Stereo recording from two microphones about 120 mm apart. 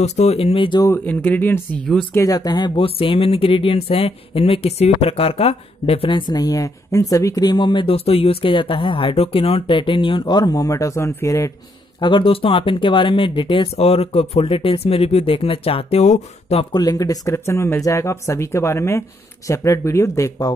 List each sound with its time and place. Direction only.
0.0 s speech: 65° left (ahead or behind); by 0.8 s 45° left (ahead or behind)
0.8 s speech: 15° left (ahead or behind)
2.1 s speech: 30° left (ahead or behind)
12.0 s speech: 45° left (ahead or behind); by 16.6 s 65° left (ahead or behind)
16.7 s speech: 30° left (ahead or behind)